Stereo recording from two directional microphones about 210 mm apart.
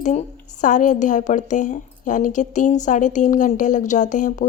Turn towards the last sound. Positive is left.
turn(degrees=35)  # may be behind; listen again after turning